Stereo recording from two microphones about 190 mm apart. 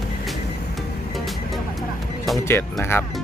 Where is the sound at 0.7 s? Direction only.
Centre (ahead or behind).